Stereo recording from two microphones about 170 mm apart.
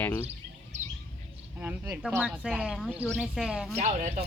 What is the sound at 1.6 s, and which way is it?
Speech, 5° right (ahead or behind).